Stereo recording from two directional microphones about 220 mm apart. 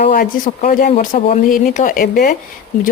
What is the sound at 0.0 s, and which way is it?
Speech, 40° left (ahead or behind).